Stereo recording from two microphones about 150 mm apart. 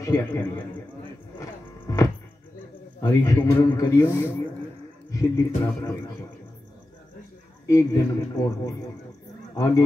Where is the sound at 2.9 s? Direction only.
20° left (ahead or behind).